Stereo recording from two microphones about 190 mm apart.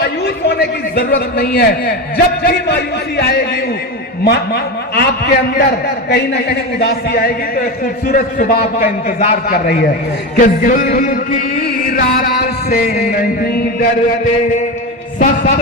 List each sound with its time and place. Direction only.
0.0 s a man's voice: 60° left (ahead or behind)
15.2 s a man's voice: 40° left (ahead or behind)